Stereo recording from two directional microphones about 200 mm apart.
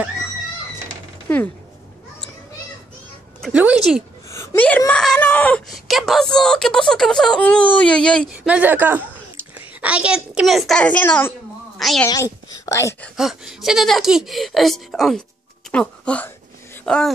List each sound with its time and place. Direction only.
1.3 s speech: 10° left (ahead or behind)
3.3 s speech: 5° right (ahead or behind)
4.3 s a woman's voice: 15° left (ahead or behind)
12.1 s speech: 20° left (ahead or behind)
13.1 s speech: centre (ahead or behind)